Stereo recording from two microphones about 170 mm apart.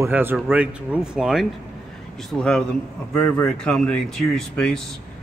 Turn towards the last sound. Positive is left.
turn(degrees=5)  # may be behind; listen again after turning